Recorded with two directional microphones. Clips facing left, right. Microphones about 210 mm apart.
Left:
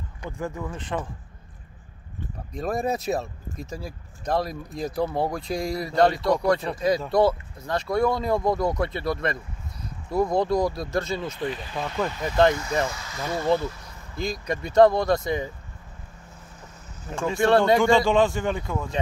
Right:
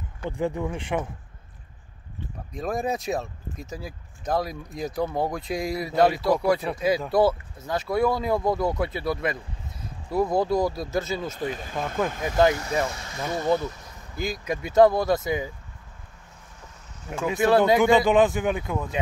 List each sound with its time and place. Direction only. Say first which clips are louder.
0.3 s speech: right 5 dB; 15° right (ahead or behind)
2.5 s speech: left 1 dB; centre (ahead or behind)
11.5 s speech: right 1 dB; 50° right (ahead or behind)
13.1 s speech: even; 15° right (ahead or behind)
14.1 s speech: even; 5° right (ahead or behind)
17.1 s speech: even; 5° right (ahead or behind)